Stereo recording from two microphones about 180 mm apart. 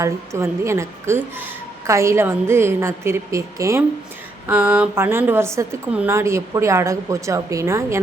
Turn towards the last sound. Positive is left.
turn(degrees=-15)  # may be behind; listen again after turning